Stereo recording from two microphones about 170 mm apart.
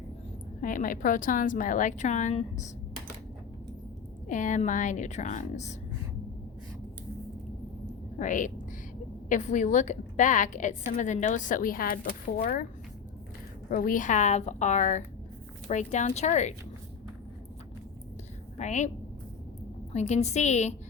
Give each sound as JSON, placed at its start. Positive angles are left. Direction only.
{"t": 0.6, "sound": "a woman's voice", "side_deg": 50}
{"t": 4.3, "sound": "a woman's voice", "side_deg": 50}
{"t": 8.2, "sound": "a woman's voice", "side_deg": 50}
{"t": 13.7, "sound": "a woman's voice", "side_deg": 55}
{"t": 18.5, "sound": "a woman's voice", "side_deg": 45}
{"t": 19.9, "sound": "a woman's voice", "side_deg": 40}